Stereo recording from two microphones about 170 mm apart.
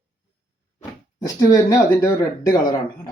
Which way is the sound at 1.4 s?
20° left (ahead or behind).